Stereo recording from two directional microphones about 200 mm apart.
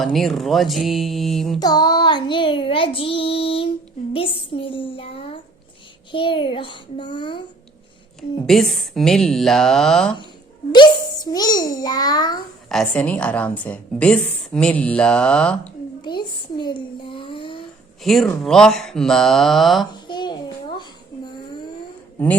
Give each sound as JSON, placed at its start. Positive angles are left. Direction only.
{"t": 0.0, "sound": "a woman's voice", "side_deg": 0}
{"t": 1.5, "sound": "child singing", "side_deg": 20}
{"t": 8.4, "sound": "a woman's voice", "side_deg": 0}
{"t": 10.7, "sound": "child singing", "side_deg": 20}
{"t": 12.6, "sound": "a woman's voice", "side_deg": 5}
{"t": 16.0, "sound": "a child's voice", "side_deg": 20}
{"t": 18.0, "sound": "a woman's voice", "side_deg": 0}
{"t": 19.9, "sound": "a sound", "side_deg": 20}